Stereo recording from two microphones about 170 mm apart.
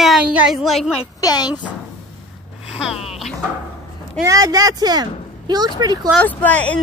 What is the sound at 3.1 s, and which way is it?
Music, centre (ahead or behind).